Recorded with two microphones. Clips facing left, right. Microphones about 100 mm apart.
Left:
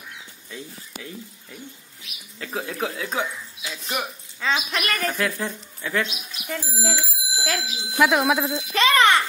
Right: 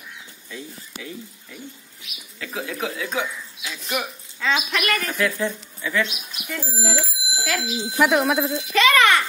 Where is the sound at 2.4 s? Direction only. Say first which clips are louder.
Even; 35° left (ahead or behind).